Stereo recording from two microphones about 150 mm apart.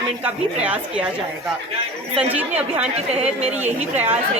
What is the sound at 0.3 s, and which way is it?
Speech, 10° right (ahead or behind).